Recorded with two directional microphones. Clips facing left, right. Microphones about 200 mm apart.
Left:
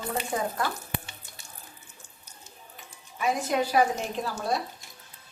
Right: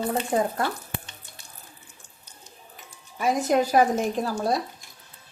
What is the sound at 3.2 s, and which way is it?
Speech, 40° right (ahead or behind).